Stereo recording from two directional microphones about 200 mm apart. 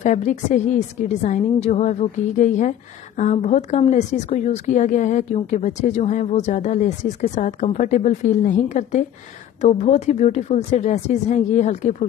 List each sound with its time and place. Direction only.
0.0 s a woman's voice: 40° left (ahead or behind)